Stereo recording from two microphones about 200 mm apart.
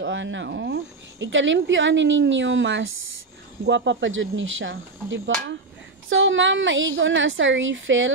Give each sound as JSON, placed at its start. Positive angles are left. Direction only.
{"t": 0.0, "sound": "speech", "side_deg": -70}